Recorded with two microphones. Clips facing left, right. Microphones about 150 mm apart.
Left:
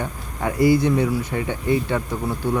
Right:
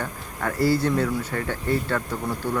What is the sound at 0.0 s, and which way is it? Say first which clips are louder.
Speech: left 3 dB; 15° left (ahead or behind).